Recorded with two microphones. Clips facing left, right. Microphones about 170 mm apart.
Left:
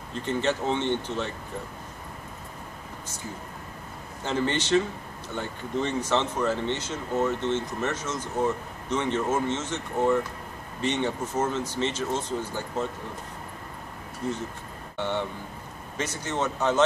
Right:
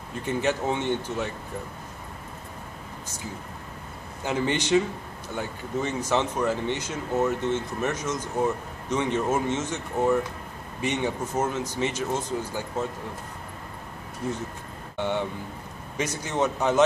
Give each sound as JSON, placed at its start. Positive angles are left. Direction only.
{"t": 0.3, "sound": "speech", "side_deg": -10}
{"t": 4.2, "sound": "speech", "side_deg": -10}
{"t": 15.0, "sound": "speech", "side_deg": -10}